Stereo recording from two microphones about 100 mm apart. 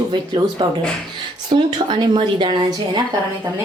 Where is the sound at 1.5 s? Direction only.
60° right (ahead or behind).